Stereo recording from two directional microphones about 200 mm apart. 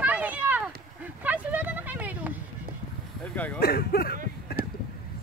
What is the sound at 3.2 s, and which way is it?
Speech, 10° left (ahead or behind).